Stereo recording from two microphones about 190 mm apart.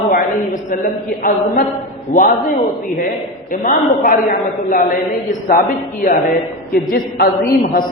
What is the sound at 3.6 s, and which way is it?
A man's voice, 45° left (ahead or behind).